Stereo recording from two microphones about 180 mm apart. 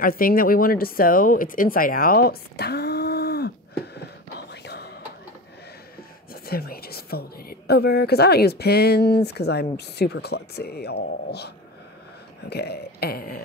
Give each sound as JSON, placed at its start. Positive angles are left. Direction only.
{"t": 0.0, "sound": "speech", "side_deg": 55}
{"t": 4.5, "sound": "music", "side_deg": 65}
{"t": 6.3, "sound": "speech", "side_deg": 60}